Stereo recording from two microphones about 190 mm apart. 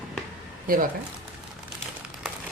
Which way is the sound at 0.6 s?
45° right (ahead or behind).